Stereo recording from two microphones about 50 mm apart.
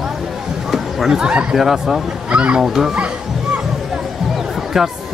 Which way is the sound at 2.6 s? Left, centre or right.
Centre.